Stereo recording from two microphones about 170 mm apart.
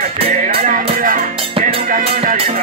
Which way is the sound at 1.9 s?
55° right (ahead or behind).